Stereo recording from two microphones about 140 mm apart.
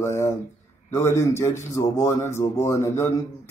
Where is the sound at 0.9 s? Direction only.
20° left (ahead or behind).